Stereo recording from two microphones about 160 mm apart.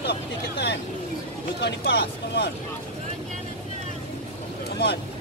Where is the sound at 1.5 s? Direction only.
85° left.